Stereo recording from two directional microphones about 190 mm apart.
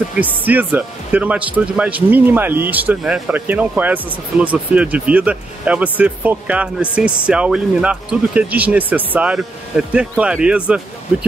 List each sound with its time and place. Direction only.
0.2 s speech: 10° right (ahead or behind)